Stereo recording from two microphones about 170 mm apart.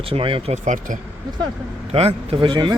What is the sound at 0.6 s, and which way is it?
Speech, 50° right (ahead or behind).